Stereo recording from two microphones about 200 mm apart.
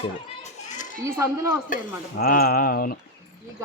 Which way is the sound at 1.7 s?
45° left (ahead or behind).